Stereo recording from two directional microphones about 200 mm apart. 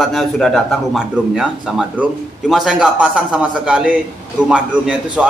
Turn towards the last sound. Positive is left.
turn(degrees=-5)  # may be behind; listen again after turning